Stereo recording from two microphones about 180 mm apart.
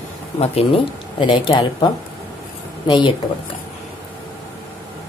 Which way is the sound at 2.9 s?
25° left (ahead or behind).